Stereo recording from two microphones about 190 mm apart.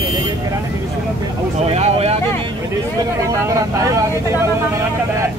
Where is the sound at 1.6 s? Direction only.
35° right (ahead or behind).